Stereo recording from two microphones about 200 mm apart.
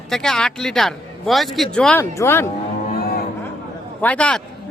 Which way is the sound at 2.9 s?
50° left (ahead or behind).